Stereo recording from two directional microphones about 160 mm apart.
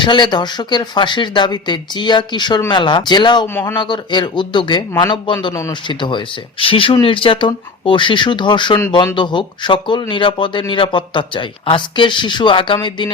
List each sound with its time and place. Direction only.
0.0 s speech: 30° left (ahead or behind)
3.4 s speech: 15° left (ahead or behind)
3.8 s speech: 30° left (ahead or behind)